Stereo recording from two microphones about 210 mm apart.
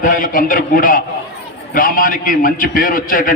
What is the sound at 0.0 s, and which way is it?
A man's voice, 40° left (ahead or behind).